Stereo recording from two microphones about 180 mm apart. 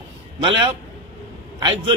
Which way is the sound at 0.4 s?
25° right (ahead or behind).